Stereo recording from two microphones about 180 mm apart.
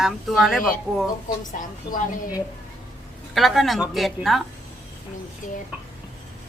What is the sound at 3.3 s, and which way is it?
Speech, centre (ahead or behind).